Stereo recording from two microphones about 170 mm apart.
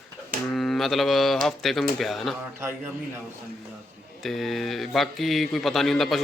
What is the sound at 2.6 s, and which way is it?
Speech, 15° right (ahead or behind).